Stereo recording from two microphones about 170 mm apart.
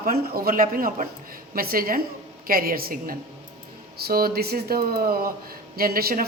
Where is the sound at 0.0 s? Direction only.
60° right (ahead or behind).